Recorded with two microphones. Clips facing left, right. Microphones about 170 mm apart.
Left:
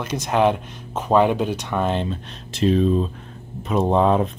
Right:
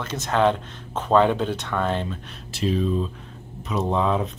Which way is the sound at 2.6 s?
40° left (ahead or behind).